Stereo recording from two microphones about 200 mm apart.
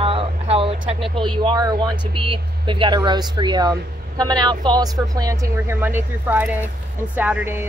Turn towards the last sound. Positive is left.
turn(degrees=-10)  # may be behind; listen again after turning